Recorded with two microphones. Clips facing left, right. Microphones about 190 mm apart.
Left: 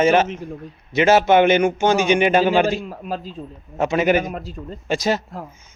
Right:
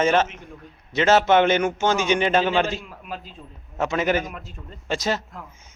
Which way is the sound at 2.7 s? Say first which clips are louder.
Left 7 dB; 35° left (ahead or behind).